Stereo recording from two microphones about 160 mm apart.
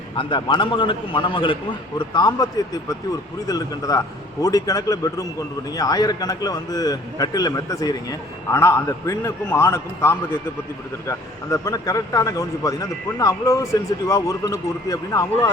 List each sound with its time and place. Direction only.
0.2 s a man's voice: 30° left (ahead or behind)